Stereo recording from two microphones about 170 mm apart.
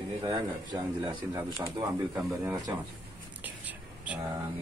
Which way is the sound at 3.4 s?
10° right (ahead or behind).